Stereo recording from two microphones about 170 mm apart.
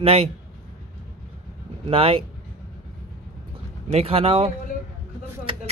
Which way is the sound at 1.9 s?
35° right (ahead or behind).